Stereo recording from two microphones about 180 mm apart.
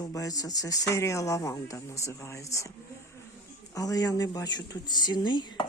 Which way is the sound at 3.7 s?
20° left (ahead or behind).